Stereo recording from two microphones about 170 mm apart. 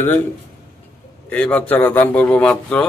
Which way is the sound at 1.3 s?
10° left (ahead or behind).